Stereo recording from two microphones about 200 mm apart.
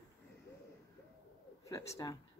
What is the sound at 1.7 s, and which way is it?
Speech, 15° left (ahead or behind).